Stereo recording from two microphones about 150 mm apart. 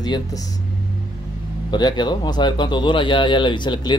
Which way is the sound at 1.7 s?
30° left (ahead or behind).